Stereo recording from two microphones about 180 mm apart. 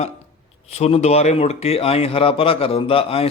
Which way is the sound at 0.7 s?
35° left (ahead or behind).